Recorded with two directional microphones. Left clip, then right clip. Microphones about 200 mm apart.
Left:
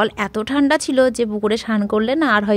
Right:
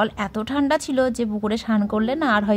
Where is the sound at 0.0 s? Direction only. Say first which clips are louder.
Left 4 dB; 25° left (ahead or behind).